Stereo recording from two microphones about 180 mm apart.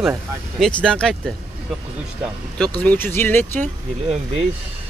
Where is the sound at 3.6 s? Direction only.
35° right (ahead or behind).